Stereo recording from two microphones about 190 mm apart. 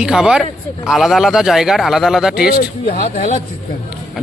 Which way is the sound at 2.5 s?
50° left (ahead or behind).